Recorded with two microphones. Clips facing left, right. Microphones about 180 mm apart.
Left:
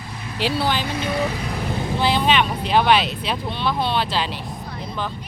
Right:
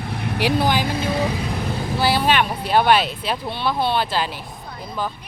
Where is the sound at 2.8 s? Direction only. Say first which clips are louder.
Right 1 dB; 50° right (ahead or behind).